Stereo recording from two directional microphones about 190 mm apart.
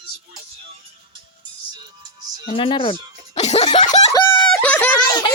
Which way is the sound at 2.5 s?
25° left (ahead or behind).